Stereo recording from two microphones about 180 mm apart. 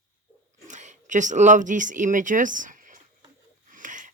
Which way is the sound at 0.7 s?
40° right (ahead or behind).